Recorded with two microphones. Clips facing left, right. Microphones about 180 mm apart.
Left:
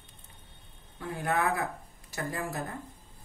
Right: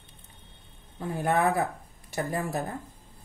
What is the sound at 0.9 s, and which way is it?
Speech, 25° right (ahead or behind).